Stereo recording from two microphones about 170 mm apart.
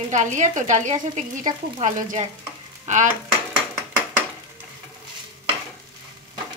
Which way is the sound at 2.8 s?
45° right (ahead or behind).